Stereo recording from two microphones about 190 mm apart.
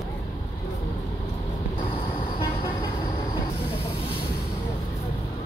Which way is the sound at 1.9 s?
30° left (ahead or behind).